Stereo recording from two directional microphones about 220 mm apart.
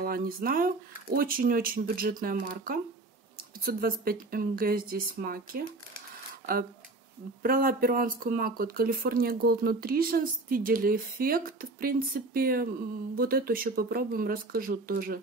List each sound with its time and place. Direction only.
0.0 s speech: 40° right (ahead or behind)
7.4 s speech: 40° right (ahead or behind)